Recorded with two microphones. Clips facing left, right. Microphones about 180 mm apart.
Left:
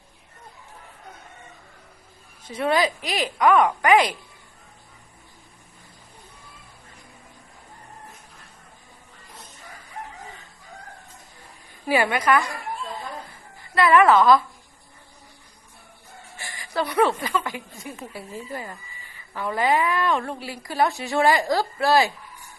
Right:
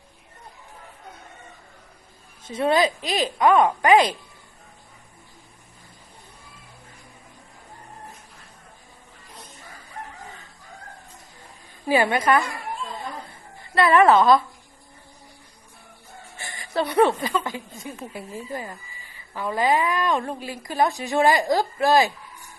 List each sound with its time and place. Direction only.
2.5 s speech: 25° right (ahead or behind)
11.9 s speech: 25° right (ahead or behind)
13.6 s a woman's voice: 25° right (ahead or behind)
16.4 s speech: 25° right (ahead or behind)